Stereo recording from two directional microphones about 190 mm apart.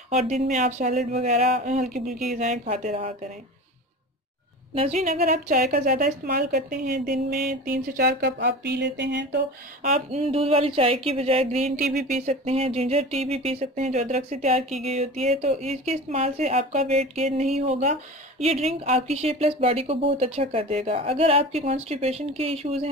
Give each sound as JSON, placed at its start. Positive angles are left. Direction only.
{"t": 0.1, "sound": "speech", "side_deg": -35}
{"t": 4.7, "sound": "speech", "side_deg": -35}
{"t": 5.1, "sound": "a woman's voice", "side_deg": -50}
{"t": 9.8, "sound": "speech", "side_deg": -35}